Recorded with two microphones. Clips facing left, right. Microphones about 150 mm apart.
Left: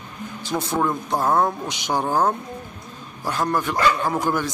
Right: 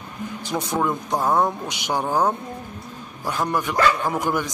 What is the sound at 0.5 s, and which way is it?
A man's voice, 5° right (ahead or behind).